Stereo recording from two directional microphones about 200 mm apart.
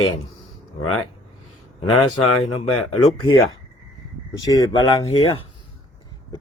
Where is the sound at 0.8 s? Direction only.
90° left.